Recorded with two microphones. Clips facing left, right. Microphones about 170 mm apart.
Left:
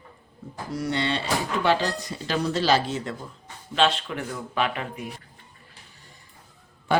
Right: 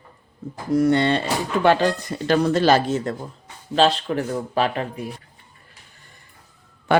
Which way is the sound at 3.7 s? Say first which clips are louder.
Right 5 dB; 35° right (ahead or behind).